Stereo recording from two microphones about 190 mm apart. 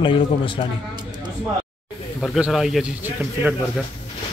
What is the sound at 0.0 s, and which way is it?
Speech, 25° left (ahead or behind).